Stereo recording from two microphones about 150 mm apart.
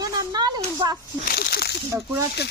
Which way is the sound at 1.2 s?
90° left.